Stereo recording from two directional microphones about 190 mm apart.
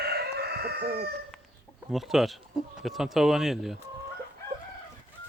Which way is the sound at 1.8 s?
Centre (ahead or behind).